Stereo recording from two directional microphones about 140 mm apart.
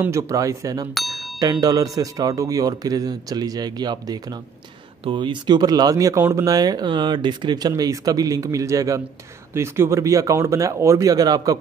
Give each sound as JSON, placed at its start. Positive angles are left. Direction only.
{"t": 0.0, "sound": "speech", "side_deg": -20}
{"t": 0.9, "sound": "a sound", "side_deg": 0}
{"t": 1.4, "sound": "speech", "side_deg": -25}